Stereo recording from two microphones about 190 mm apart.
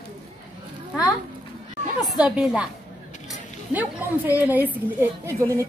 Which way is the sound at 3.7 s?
10° right (ahead or behind).